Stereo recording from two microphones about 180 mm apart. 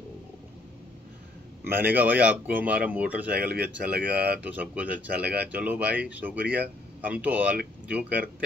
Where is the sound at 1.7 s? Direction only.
10° right (ahead or behind).